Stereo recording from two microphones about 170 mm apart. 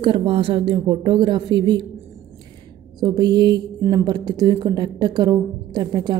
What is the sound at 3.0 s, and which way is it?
A woman's voice, 25° right (ahead or behind).